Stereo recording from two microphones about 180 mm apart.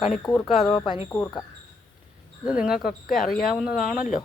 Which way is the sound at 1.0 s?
15° left (ahead or behind).